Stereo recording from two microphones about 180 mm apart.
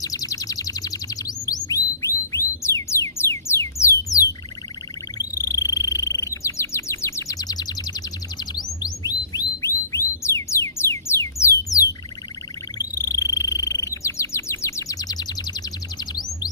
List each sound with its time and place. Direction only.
0.0 s a sound: 20° left (ahead or behind)
1.5 s music: 20° left (ahead or behind)
5.1 s bird: 20° left (ahead or behind)
13.0 s bird: 20° left (ahead or behind)